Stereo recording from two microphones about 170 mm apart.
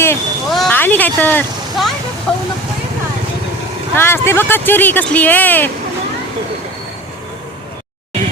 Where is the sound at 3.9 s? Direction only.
15° left (ahead or behind).